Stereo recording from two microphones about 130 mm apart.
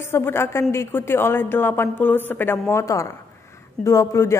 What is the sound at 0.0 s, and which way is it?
A woman's voice, 20° left (ahead or behind).